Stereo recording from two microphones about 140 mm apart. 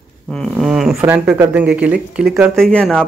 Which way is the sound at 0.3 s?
5° left (ahead or behind).